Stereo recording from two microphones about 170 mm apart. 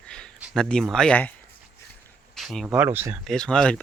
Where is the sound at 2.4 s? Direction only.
Centre (ahead or behind).